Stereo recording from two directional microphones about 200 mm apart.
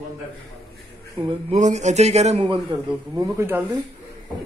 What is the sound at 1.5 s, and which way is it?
Speech, 35° right (ahead or behind).